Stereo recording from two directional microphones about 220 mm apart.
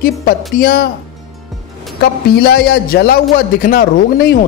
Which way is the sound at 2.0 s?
45° left (ahead or behind).